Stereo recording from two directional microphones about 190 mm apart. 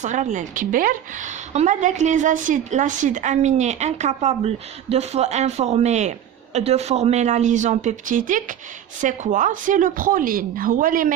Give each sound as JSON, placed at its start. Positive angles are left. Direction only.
{"t": 0.0, "sound": "a woman's voice", "side_deg": -40}